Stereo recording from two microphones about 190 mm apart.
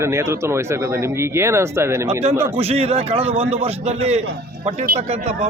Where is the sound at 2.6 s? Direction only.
30° right (ahead or behind).